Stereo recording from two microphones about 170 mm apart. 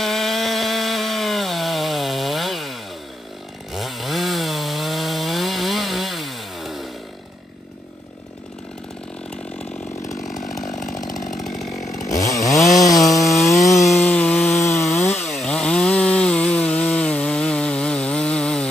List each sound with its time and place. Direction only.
0.0 s chainsaw: centre (ahead or behind)
10.2 s chainsaw: centre (ahead or behind)
11.1 s chainsaw: 50° left (ahead or behind)
12.1 s chainsaw: 20° left (ahead or behind)
14.5 s chainsaw: 40° left (ahead or behind)
14.8 s chainsaw: 15° left (ahead or behind)